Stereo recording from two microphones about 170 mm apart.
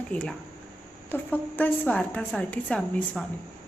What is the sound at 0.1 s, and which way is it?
A woman's voice, 5° left (ahead or behind).